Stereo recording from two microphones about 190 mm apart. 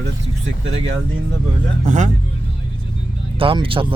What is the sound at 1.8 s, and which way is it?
Speech, 40° right (ahead or behind).